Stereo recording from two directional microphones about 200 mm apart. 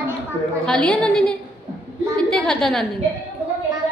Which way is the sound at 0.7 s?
5° left (ahead or behind).